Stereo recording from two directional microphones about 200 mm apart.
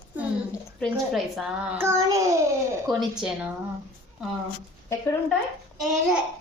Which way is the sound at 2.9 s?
Centre (ahead or behind).